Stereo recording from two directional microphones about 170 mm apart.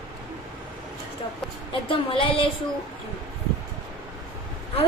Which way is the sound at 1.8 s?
30° left (ahead or behind).